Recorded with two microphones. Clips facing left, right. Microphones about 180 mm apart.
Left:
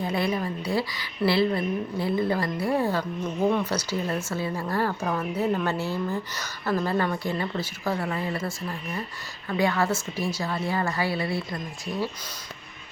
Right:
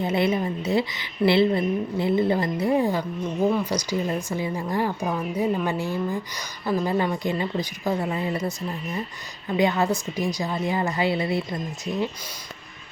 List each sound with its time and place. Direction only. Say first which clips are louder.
0.0 s a woman's voice: right 4 dB; 25° right (ahead or behind)